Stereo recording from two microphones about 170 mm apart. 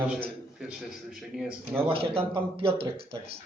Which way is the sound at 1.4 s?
5° right (ahead or behind).